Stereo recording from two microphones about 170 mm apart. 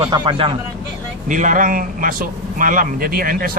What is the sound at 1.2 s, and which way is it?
A man's voice, 50° right (ahead or behind).